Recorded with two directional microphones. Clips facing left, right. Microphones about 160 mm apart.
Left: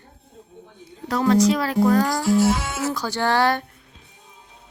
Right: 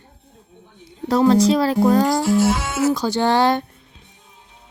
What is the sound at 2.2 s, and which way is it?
Speech, 70° right (ahead or behind).